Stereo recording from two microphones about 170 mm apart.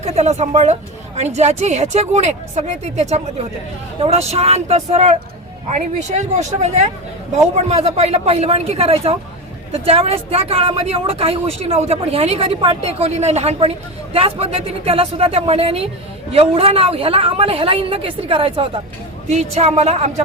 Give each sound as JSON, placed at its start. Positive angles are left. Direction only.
{"t": 0.0, "sound": "speech", "side_deg": -40}